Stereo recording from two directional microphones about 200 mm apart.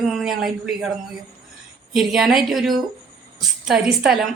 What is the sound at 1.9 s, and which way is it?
Speech, centre (ahead or behind).